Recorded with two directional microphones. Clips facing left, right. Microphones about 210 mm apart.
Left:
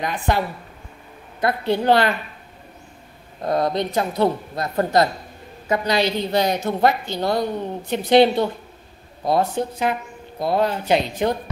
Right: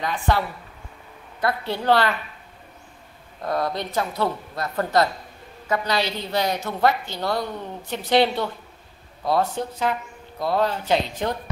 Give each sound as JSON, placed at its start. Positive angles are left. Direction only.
{"t": 0.0, "sound": "a woman's voice", "side_deg": 15}
{"t": 3.4, "sound": "a woman's voice", "side_deg": 20}